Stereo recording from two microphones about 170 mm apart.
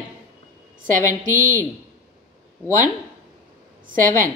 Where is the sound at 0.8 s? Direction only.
50° right (ahead or behind).